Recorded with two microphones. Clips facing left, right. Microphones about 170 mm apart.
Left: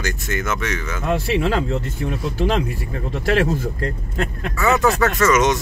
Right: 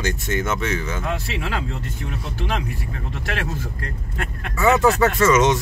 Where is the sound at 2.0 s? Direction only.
35° left (ahead or behind).